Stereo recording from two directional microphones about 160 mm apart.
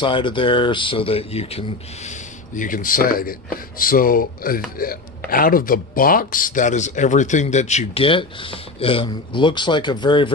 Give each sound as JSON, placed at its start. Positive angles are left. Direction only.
{"t": 0.0, "sound": "speech", "side_deg": 30}
{"t": 2.0, "sound": "speech", "side_deg": 55}